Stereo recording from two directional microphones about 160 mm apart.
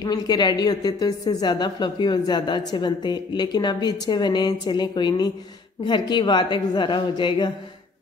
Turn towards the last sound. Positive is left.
turn(degrees=30)  # may be behind; listen again after turning